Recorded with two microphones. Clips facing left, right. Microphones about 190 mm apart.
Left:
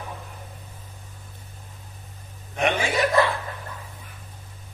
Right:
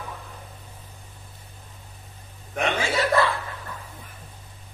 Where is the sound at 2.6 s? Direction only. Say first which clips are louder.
Left 2 dB; 15° left (ahead or behind).